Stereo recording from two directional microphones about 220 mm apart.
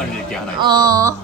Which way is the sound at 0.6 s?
15° right (ahead or behind).